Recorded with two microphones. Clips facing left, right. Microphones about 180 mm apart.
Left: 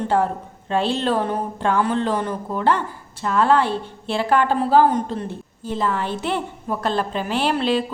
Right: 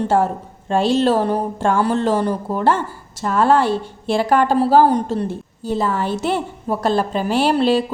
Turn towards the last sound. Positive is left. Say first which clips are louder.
# right 5 dB
turn(degrees=-35)  # may be behind; listen again after turning